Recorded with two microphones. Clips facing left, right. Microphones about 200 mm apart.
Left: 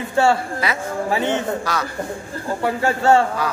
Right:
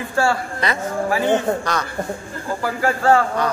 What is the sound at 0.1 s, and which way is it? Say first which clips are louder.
Speech: left 3 dB; 25° left (ahead or behind).